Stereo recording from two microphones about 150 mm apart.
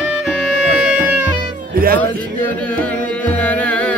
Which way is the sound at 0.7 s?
5° right (ahead or behind).